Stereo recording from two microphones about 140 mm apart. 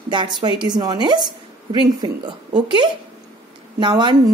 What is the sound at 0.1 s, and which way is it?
A woman's voice, 35° right (ahead or behind).